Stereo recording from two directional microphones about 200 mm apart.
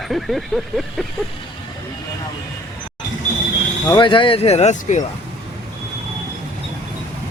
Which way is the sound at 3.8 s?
20° left (ahead or behind).